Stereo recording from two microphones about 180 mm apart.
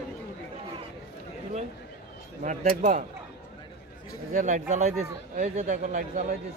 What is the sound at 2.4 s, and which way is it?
Speech, 45° right (ahead or behind).